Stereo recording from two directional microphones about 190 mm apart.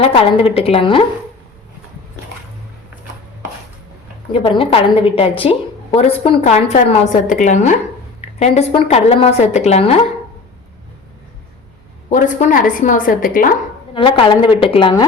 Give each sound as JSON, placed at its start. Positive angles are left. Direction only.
{"t": 0.0, "sound": "a woman's voice", "side_deg": 30}
{"t": 4.3, "sound": "a woman's voice", "side_deg": 30}
{"t": 12.0, "sound": "a woman's voice", "side_deg": 40}
{"t": 13.9, "sound": "a woman's voice", "side_deg": 25}